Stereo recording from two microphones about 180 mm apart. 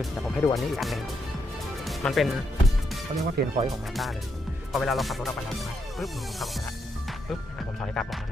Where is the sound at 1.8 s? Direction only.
Centre (ahead or behind).